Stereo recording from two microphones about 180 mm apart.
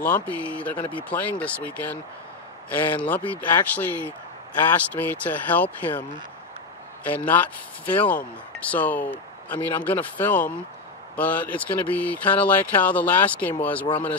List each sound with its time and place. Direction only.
0.0 s speech: 10° left (ahead or behind)
3.0 s speech: 10° left (ahead or behind)
7.1 s speech: 10° left (ahead or behind)